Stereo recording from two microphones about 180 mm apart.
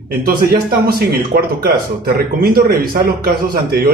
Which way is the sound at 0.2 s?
55° right (ahead or behind).